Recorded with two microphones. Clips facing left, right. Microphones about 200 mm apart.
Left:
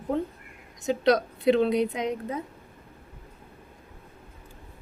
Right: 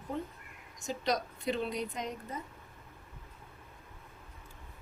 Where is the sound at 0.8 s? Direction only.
65° left (ahead or behind).